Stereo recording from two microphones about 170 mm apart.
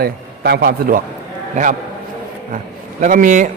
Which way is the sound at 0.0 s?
70° right (ahead or behind).